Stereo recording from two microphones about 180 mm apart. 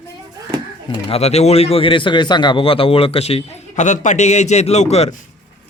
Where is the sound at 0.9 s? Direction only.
35° left (ahead or behind).